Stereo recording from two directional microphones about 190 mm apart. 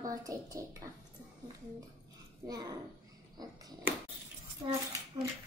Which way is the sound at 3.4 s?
20° right (ahead or behind).